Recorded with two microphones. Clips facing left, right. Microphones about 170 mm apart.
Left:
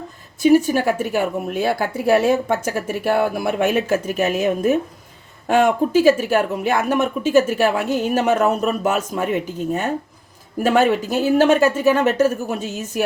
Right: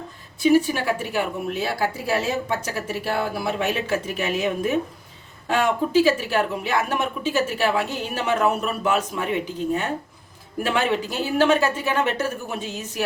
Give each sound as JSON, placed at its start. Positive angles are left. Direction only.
{"t": 0.3, "sound": "speech", "side_deg": 45}